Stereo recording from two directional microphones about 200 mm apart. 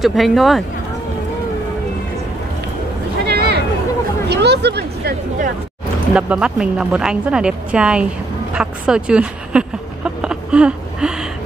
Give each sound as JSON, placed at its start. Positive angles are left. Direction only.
{"t": 0.0, "sound": "speech", "side_deg": 0}
{"t": 3.3, "sound": "a sound", "side_deg": -55}
{"t": 4.3, "sound": "hubbub", "side_deg": -55}
{"t": 6.1, "sound": "speech", "side_deg": -5}